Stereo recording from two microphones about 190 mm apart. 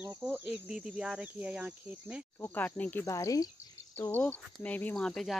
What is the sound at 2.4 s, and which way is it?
Speech, 10° left (ahead or behind).